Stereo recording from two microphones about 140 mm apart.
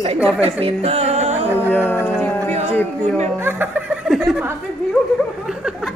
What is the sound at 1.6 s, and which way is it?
Speech, 15° left (ahead or behind).